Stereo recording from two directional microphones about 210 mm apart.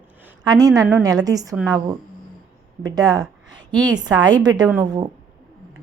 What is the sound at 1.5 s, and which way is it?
Speech, 5° right (ahead or behind).